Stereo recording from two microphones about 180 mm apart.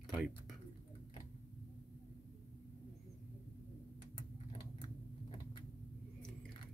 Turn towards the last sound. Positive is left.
turn(degrees=25)  # may be behind; listen again after turning